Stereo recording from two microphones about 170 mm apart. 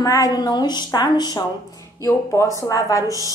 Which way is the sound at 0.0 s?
20° left (ahead or behind).